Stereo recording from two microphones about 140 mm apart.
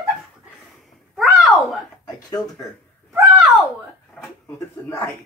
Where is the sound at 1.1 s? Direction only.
Centre (ahead or behind).